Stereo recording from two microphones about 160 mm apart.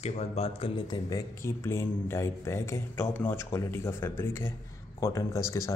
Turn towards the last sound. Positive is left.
turn(degrees=15)  # may be behind; listen again after turning